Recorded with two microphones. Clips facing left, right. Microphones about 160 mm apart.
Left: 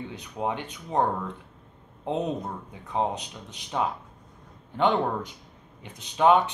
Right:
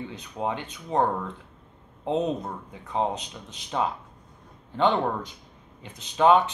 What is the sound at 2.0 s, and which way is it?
Speech, 20° right (ahead or behind).